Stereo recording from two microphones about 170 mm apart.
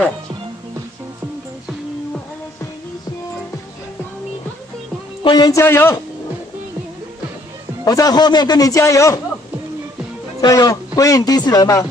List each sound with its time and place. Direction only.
5.2 s speech: 25° left (ahead or behind)
7.8 s a man's voice: 20° left (ahead or behind)
10.4 s a man's voice: 20° left (ahead or behind)